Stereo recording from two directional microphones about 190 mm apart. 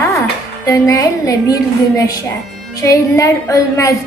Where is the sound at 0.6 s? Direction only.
15° left (ahead or behind).